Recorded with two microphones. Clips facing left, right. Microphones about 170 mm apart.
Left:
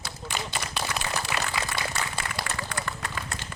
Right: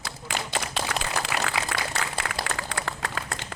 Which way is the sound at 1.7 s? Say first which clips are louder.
Right 1 dB; 90° right.